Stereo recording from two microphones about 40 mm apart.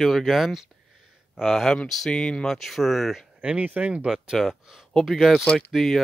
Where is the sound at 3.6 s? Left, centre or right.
Right.